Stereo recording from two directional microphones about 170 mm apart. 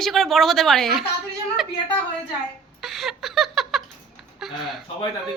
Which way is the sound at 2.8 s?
Centre (ahead or behind).